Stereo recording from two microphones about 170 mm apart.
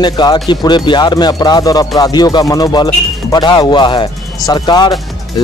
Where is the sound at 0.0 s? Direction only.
25° left (ahead or behind).